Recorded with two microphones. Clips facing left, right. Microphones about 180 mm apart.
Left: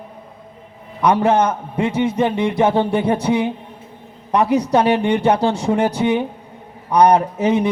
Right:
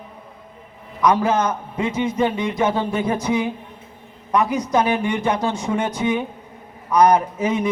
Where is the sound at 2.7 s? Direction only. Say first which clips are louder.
Left 5 dB; 30° left (ahead or behind).